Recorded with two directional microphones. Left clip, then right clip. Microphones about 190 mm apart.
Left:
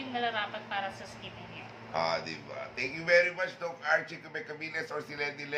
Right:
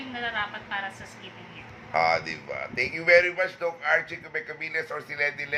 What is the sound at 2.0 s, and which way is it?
Speech, 30° right (ahead or behind).